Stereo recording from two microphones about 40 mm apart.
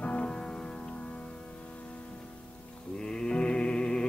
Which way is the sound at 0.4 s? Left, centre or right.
Centre.